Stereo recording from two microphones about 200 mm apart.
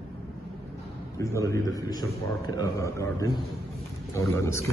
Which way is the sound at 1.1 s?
15° left (ahead or behind).